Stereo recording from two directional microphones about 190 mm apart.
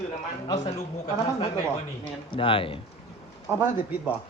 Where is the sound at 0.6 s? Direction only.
35° left (ahead or behind).